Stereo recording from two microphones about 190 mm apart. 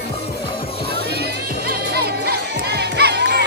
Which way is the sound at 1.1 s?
55° right (ahead or behind).